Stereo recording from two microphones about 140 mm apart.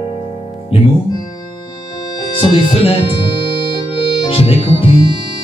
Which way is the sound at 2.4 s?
40° left (ahead or behind).